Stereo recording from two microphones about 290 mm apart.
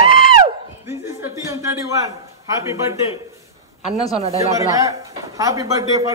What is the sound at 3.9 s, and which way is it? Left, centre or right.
Speech, centre.